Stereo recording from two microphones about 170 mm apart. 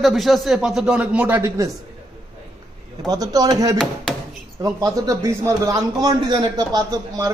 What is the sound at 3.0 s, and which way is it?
A man's voice, 20° right (ahead or behind).